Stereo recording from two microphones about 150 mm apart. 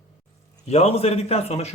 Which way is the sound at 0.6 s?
45° left (ahead or behind).